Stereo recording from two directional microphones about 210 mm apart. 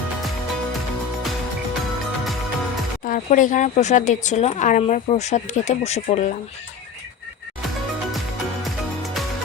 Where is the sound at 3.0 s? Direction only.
40° left (ahead or behind).